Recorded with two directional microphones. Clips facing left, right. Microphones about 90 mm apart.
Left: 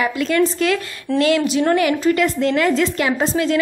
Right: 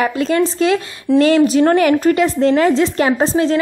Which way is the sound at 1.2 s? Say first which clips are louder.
Right 5 dB; 40° right (ahead or behind).